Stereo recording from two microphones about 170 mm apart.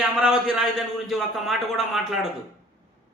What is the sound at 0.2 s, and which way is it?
A man's voice, centre (ahead or behind).